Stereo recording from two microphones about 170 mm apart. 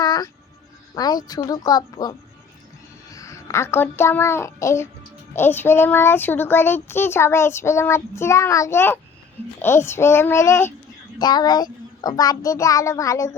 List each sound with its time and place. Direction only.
0.0 s music: 25° left (ahead or behind)
0.9 s a child's voice: 25° left (ahead or behind)